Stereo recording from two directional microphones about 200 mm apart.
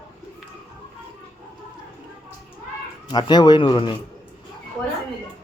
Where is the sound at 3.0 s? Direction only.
20° left (ahead or behind).